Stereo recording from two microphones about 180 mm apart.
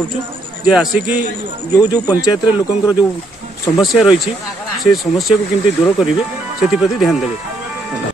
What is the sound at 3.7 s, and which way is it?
Speech, centre (ahead or behind).